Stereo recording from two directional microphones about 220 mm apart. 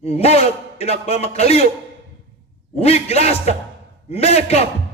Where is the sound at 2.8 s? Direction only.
30° left (ahead or behind).